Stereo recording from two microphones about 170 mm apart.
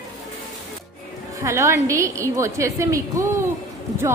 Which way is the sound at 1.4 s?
15° right (ahead or behind).